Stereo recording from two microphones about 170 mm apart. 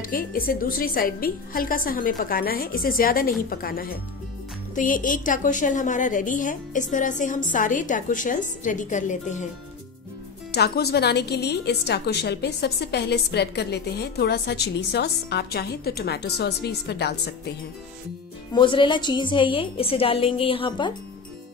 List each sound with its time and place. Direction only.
0.0 s a woman's voice: 60° left (ahead or behind)
10.5 s a woman's voice: 70° left (ahead or behind)
18.5 s a woman's voice: 30° left (ahead or behind)